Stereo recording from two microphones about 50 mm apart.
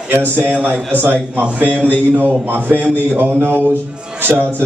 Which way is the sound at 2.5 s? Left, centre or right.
Right.